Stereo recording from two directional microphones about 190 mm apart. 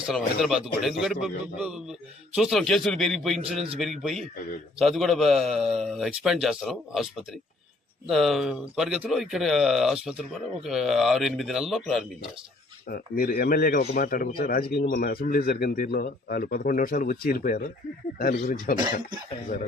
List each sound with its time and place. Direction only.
0.0 s speech: centre (ahead or behind)
12.9 s a man's voice: 50° left (ahead or behind)